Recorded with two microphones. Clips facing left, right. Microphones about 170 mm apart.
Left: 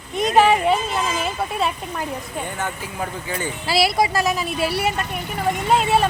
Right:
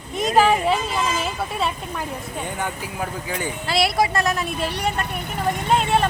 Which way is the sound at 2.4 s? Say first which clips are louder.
Even; 15° right (ahead or behind).